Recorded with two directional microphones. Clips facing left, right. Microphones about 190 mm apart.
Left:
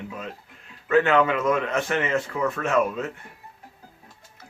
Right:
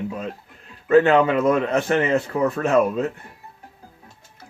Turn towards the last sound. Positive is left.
turn(degrees=-35)  # may be behind; listen again after turning